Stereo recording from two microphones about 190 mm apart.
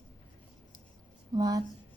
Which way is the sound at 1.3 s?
20° right (ahead or behind).